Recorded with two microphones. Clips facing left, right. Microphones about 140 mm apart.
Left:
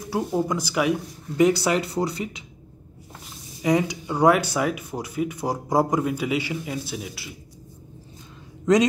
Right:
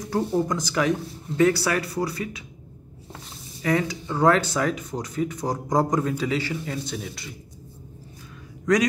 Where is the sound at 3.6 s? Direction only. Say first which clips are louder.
Left 2 dB; 15° left (ahead or behind).